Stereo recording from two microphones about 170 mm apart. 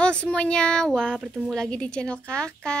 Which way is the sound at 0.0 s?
5° left (ahead or behind).